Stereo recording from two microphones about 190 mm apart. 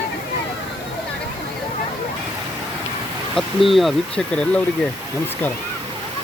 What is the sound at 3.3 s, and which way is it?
Speech, centre (ahead or behind).